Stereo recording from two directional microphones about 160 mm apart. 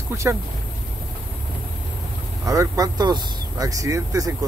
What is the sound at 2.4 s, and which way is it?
Speech, 20° right (ahead or behind).